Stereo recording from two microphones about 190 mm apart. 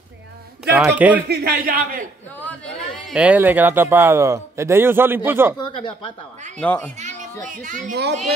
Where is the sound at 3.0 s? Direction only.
5° right (ahead or behind).